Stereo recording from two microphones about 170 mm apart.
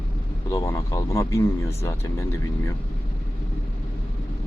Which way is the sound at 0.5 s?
20° left (ahead or behind).